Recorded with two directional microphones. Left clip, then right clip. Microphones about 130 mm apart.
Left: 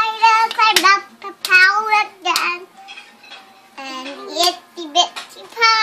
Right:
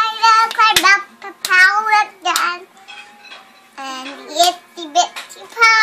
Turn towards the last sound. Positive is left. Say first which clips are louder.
# right 3 dB
turn(degrees=5)  # may be behind; listen again after turning